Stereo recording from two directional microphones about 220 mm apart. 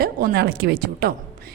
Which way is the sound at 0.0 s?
45° right (ahead or behind).